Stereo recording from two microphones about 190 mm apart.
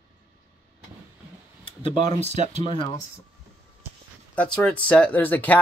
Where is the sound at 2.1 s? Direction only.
35° right (ahead or behind).